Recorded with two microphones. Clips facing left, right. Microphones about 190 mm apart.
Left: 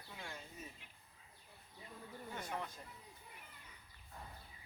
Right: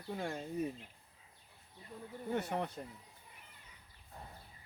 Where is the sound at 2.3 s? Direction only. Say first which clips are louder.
Right 9 dB; 65° right (ahead or behind).